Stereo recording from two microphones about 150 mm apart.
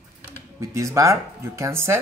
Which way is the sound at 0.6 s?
20° right (ahead or behind).